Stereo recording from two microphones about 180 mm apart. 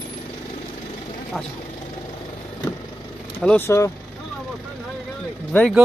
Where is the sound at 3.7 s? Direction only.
15° left (ahead or behind).